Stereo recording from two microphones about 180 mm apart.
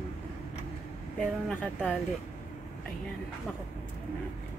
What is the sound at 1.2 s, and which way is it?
Speech, 5° left (ahead or behind).